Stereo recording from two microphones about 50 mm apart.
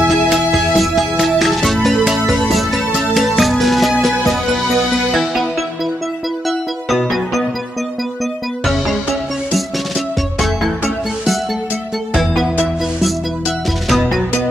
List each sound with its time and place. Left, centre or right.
0.1 s music: centre